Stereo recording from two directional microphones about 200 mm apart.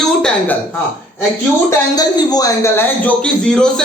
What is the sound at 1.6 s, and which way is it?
A man's voice, 20° left (ahead or behind).